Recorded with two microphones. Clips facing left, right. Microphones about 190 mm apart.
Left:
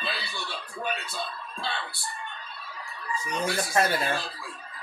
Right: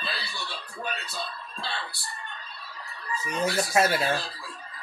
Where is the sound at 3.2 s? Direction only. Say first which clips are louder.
Right 2 dB; 5° right (ahead or behind).